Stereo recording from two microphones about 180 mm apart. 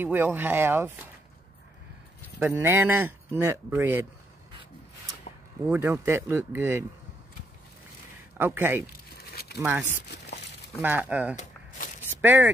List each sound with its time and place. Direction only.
0.0 s speech: 10° right (ahead or behind)
2.3 s speech: 10° right (ahead or behind)
5.7 s speech: 10° right (ahead or behind)
8.4 s speech: 10° right (ahead or behind)
8.8 s a sound: 60° left (ahead or behind)
9.6 s speech: 10° right (ahead or behind)
10.0 s crumpling: 70° left (ahead or behind)
10.8 s speech: 10° right (ahead or behind)
12.1 s a sound: 10° right (ahead or behind)